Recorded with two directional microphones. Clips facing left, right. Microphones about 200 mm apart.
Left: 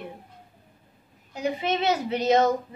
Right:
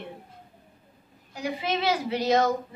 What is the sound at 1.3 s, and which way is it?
A woman's voice, 25° left (ahead or behind).